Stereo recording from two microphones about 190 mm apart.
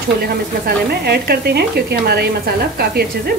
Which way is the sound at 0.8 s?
55° right (ahead or behind).